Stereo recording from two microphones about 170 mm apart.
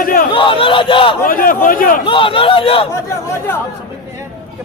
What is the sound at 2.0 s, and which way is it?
Speech, 30° left (ahead or behind).